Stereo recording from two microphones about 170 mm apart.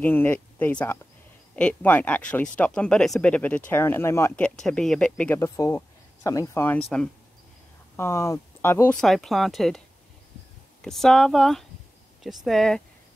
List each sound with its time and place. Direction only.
0.0 s speech: 10° left (ahead or behind)
4.6 s speech: 5° left (ahead or behind)
9.0 s speech: centre (ahead or behind)
10.8 s speech: centre (ahead or behind)